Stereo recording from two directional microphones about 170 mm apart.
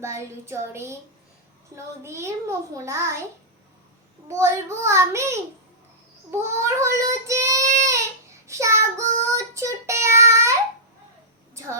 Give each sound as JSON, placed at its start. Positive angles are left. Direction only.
{"t": 0.0, "sound": "a child's voice", "side_deg": -15}
{"t": 4.3, "sound": "a child's voice", "side_deg": -15}
{"t": 6.5, "sound": "child singing", "side_deg": -15}
{"t": 11.5, "sound": "speech", "side_deg": -15}